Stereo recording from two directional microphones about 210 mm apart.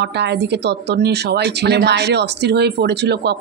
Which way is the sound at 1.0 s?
50° right (ahead or behind).